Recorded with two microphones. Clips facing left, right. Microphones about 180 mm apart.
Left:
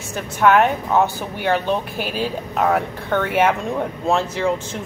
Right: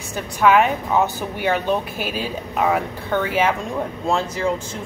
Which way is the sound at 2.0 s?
45° right (ahead or behind).